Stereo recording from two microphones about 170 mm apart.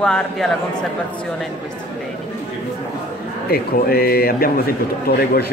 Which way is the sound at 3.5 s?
65° left (ahead or behind).